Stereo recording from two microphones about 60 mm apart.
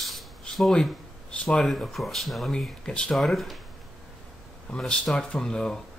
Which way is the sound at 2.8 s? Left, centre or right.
Centre.